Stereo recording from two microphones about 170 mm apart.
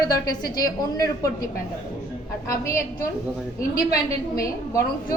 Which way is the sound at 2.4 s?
15° left (ahead or behind).